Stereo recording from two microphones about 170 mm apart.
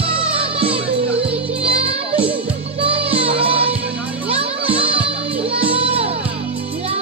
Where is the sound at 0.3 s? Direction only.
35° right (ahead or behind).